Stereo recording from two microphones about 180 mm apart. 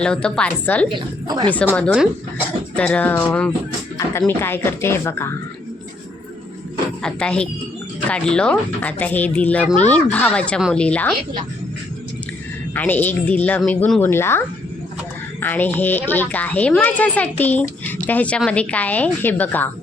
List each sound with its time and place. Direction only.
0.0 s a woman's voice: 5° left (ahead or behind)
0.9 s a woman's voice: 25° right (ahead or behind)
1.5 s a woman's voice: 10° left (ahead or behind)
7.0 s a woman's voice: 5° left (ahead or behind)
12.7 s a woman's voice: 10° left (ahead or behind)